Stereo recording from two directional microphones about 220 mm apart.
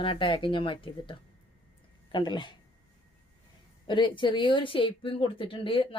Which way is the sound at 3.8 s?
20° left (ahead or behind).